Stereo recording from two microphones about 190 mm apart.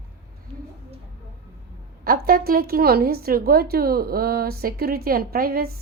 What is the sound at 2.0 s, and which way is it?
A woman's voice, 50° right (ahead or behind).